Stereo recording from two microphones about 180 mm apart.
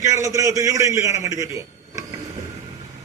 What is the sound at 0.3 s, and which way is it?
A man's voice, 15° right (ahead or behind).